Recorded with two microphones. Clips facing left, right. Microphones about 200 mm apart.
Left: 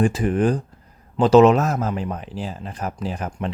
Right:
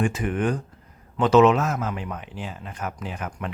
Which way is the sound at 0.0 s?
35° left (ahead or behind).